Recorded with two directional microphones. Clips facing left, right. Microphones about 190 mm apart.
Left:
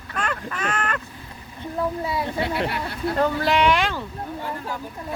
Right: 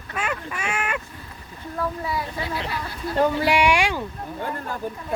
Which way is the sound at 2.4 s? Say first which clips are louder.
Left 4 dB; 65° left (ahead or behind).